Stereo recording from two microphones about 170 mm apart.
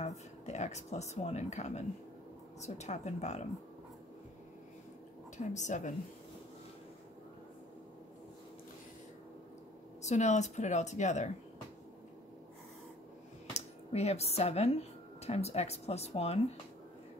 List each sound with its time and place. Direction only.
0.0 s speech: 40° left (ahead or behind)
5.4 s speech: 45° left (ahead or behind)
10.0 s speech: 45° left (ahead or behind)
13.5 s speech: 40° left (ahead or behind)